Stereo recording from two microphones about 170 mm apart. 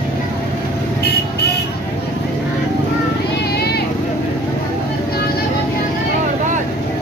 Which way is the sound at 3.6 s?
70° left (ahead or behind).